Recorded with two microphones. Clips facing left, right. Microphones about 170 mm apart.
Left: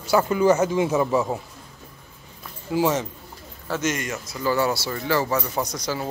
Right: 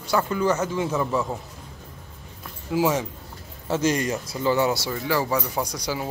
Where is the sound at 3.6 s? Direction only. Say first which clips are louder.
Right 3 dB; 30° right (ahead or behind).